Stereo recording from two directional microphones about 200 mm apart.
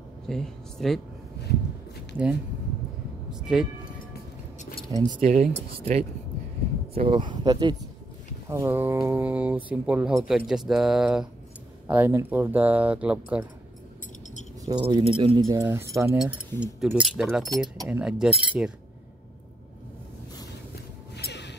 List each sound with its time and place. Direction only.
0.3 s speech: centre (ahead or behind)
3.3 s music: 5° right (ahead or behind)
4.9 s speech: 20° right (ahead or behind)
5.2 s speech: 30° right (ahead or behind); by 13.4 s 5° right (ahead or behind)
14.7 s speech: 20° right (ahead or behind); by 18.7 s 5° right (ahead or behind)
21.2 s a sound: 60° left (ahead or behind)